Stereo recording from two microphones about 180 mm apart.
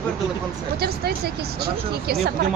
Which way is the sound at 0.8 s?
60° right (ahead or behind).